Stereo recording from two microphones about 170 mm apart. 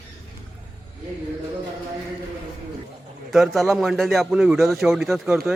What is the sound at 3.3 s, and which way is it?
Speech, centre (ahead or behind).